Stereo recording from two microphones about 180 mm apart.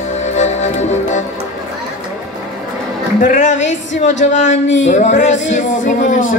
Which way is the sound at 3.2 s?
45° left (ahead or behind).